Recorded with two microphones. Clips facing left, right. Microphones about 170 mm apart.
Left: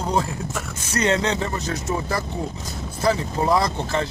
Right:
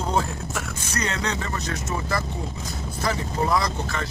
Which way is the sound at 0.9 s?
25° left (ahead or behind).